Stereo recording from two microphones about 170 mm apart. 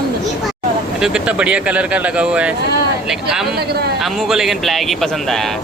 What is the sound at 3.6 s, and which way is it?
Speech, 70° right (ahead or behind).